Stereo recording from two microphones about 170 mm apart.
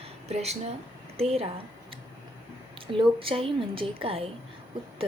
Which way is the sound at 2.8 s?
30° right (ahead or behind).